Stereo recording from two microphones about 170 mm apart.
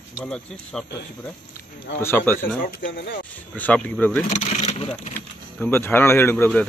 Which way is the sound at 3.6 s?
10° left (ahead or behind).